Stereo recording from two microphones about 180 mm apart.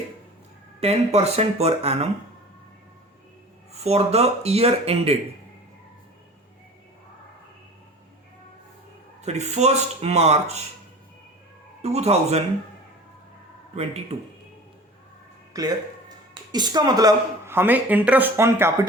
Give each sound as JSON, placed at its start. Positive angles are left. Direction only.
{"t": 0.8, "sound": "speech", "side_deg": -35}
{"t": 3.7, "sound": "speech", "side_deg": -35}
{"t": 9.2, "sound": "speech", "side_deg": -40}
{"t": 11.8, "sound": "speech", "side_deg": -35}
{"t": 13.7, "sound": "speech", "side_deg": -35}
{"t": 15.5, "sound": "speech", "side_deg": -20}